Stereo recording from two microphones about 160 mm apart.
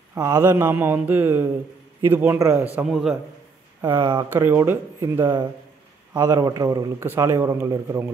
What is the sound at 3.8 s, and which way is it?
Speech, 30° right (ahead or behind).